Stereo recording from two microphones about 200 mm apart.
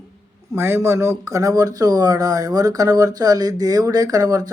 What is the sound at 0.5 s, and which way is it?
Speech, 10° right (ahead or behind).